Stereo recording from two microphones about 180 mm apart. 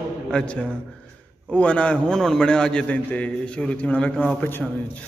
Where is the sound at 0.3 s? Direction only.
5° left (ahead or behind).